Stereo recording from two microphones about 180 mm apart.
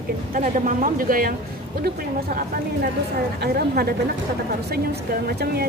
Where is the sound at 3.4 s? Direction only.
60° right (ahead or behind).